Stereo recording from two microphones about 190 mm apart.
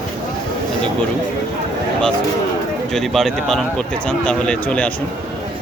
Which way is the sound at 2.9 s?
Centre (ahead or behind).